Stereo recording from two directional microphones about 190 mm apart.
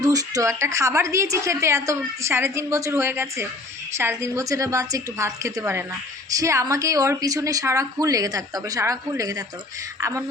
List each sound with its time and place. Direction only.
0.0 s a woman's voice: 20° right (ahead or behind)